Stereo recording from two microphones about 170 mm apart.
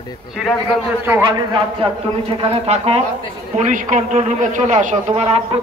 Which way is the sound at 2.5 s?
35° right (ahead or behind).